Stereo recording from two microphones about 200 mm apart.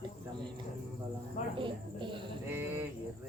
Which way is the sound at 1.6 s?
25° right (ahead or behind).